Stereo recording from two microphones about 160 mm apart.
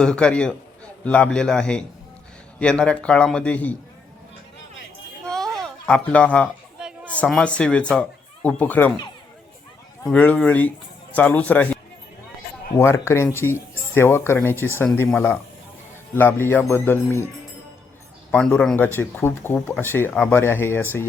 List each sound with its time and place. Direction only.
0.0 s a man's voice: 5° left (ahead or behind)
5.2 s a sound: 5° left (ahead or behind)
6.7 s a sound: 5° right (ahead or behind)
7.1 s speech: 5° left (ahead or behind)
10.1 s a man's voice: 10° left (ahead or behind)
18.3 s speech: 5° left (ahead or behind)